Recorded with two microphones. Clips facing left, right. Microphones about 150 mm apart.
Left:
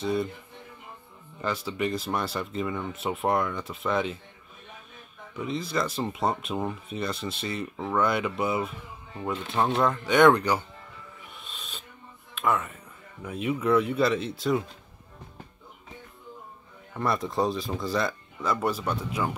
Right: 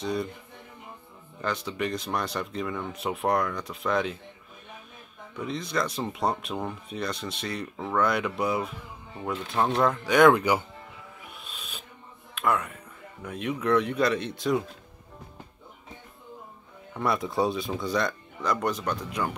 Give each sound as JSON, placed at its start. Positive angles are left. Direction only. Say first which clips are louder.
{"t": 0.0, "sound": "speech", "louder": "left 2 dB", "side_deg": 0}
{"t": 1.4, "sound": "speech", "louder": "left 1 dB", "side_deg": 5}
{"t": 5.4, "sound": "speech", "louder": "left 1 dB", "side_deg": 5}
{"t": 11.1, "sound": "music", "louder": "right 1 dB", "side_deg": -5}
{"t": 12.4, "sound": "speech", "louder": "even", "side_deg": 0}
{"t": 16.9, "sound": "speech", "louder": "even", "side_deg": 0}